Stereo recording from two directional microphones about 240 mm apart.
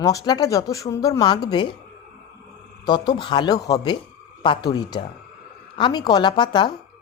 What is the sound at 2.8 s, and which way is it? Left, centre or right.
A woman's voice, centre.